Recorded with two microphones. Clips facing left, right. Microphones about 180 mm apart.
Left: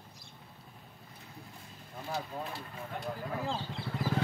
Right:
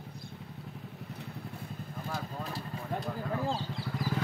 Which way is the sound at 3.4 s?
40° right (ahead or behind).